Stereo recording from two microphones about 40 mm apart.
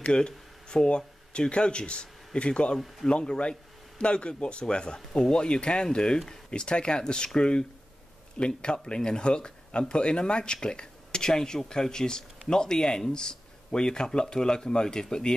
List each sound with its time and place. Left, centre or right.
0.0 s speech: left